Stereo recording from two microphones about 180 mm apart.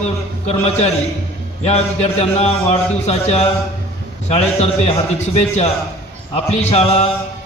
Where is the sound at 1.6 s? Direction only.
35° left (ahead or behind).